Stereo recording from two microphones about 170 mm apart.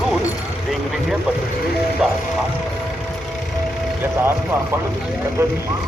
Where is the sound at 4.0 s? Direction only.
10° right (ahead or behind).